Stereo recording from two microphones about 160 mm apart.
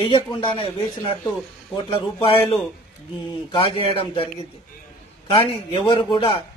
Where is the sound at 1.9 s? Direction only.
35° left (ahead or behind).